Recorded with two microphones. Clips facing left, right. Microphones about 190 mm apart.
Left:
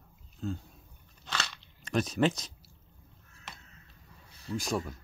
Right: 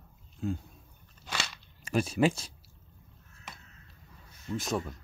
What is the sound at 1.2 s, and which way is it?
Crunch, 10° right (ahead or behind).